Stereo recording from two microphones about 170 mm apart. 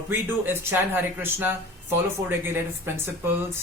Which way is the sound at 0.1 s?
10° right (ahead or behind).